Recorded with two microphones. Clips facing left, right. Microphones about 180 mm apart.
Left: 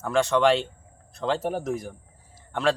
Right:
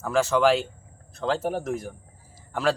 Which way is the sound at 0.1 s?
5° right (ahead or behind).